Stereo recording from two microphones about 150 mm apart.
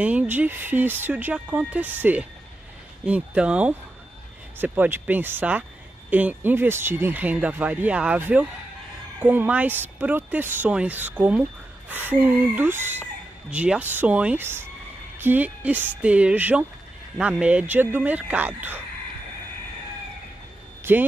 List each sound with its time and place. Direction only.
0.0 s speech: 10° right (ahead or behind)
20.9 s speech: 15° right (ahead or behind)